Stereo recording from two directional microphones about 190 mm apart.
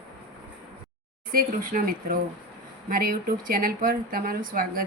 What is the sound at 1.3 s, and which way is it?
A woman's voice, 50° right (ahead or behind).